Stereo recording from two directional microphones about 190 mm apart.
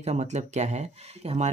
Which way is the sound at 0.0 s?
35° right (ahead or behind).